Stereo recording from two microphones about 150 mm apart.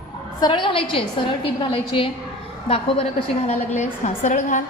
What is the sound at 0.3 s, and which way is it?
A woman's voice, 30° left (ahead or behind).